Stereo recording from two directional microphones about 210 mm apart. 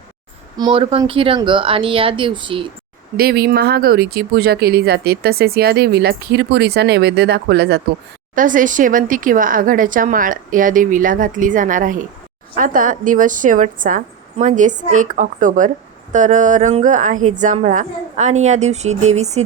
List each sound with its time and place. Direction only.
0.5 s speech: 20° right (ahead or behind)
3.2 s speech: 45° right (ahead or behind)
8.4 s speech: 40° right (ahead or behind)